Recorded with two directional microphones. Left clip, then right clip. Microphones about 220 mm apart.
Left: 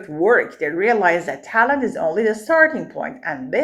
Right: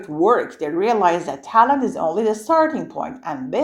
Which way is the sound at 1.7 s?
55° right (ahead or behind).